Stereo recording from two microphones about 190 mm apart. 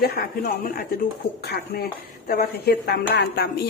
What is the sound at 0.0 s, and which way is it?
Speech, 55° left (ahead or behind).